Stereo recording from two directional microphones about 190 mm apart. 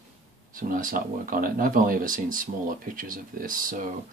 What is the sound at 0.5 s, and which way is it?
Speech, 45° right (ahead or behind).